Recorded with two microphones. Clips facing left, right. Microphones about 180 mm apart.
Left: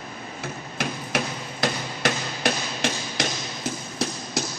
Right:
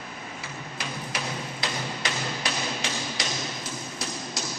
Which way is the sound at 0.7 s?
50° left (ahead or behind).